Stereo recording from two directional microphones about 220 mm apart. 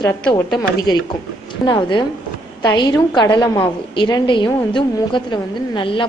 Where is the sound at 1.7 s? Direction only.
20° left (ahead or behind).